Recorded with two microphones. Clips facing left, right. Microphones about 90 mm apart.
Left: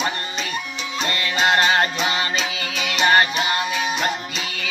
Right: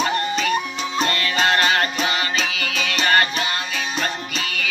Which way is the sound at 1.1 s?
25° left (ahead or behind).